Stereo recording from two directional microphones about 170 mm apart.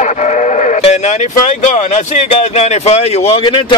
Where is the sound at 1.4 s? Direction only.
45° left (ahead or behind).